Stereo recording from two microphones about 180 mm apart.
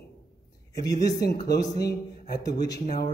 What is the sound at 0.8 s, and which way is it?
A man's voice, 20° left (ahead or behind).